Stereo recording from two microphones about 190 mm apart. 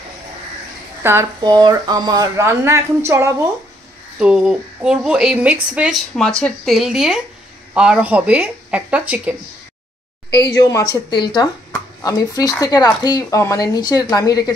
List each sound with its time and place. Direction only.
1.0 s speech: 15° right (ahead or behind)
4.2 s speech: 5° right (ahead or behind)
10.5 s speech: 20° left (ahead or behind)